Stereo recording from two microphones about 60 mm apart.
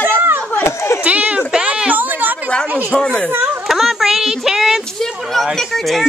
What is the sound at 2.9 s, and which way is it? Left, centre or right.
Speech, centre.